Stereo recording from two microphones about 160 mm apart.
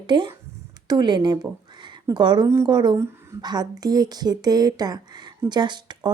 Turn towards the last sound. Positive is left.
turn(degrees=-25)  # may be behind; listen again after turning